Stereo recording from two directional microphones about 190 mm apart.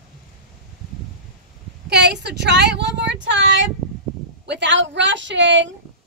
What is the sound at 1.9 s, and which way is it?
A woman's voice, 60° right (ahead or behind).